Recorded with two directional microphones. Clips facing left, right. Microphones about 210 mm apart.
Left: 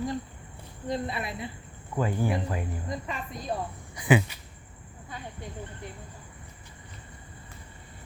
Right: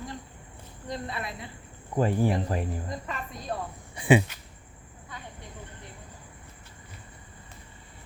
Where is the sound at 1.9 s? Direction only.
35° right (ahead or behind).